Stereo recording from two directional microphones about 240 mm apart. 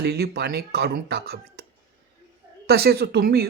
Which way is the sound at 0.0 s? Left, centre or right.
Right.